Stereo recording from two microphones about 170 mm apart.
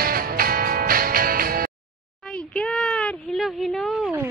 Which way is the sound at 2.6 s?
5° left (ahead or behind).